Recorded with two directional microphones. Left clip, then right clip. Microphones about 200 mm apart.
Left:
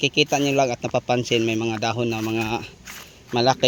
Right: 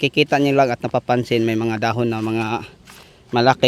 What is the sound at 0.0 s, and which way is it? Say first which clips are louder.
Speech: right 3 dB; 30° right (ahead or behind).